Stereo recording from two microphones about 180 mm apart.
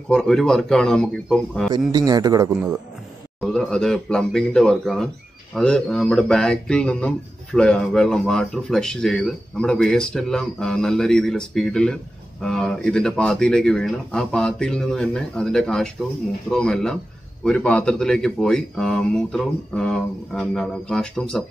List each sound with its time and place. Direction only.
0.1 s speech: 5° left (ahead or behind)
1.9 s speech: 20° right (ahead or behind)
3.3 s speech: centre (ahead or behind)